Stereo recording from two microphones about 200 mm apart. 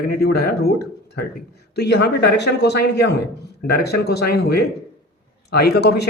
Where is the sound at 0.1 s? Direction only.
50° left (ahead or behind).